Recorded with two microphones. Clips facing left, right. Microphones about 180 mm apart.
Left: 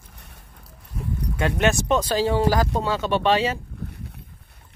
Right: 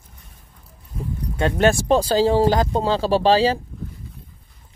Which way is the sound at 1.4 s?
30° right (ahead or behind).